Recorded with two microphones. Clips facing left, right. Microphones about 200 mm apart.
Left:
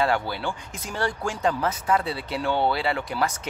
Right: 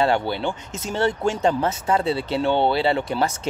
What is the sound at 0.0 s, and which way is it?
Speech, 25° right (ahead or behind).